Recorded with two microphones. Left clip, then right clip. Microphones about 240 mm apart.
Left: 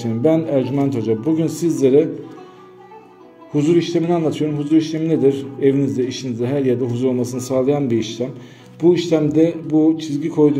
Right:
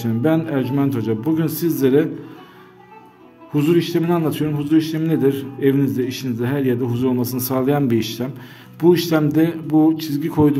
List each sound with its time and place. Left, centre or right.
0.3 s a man's voice: centre
3.5 s a man's voice: right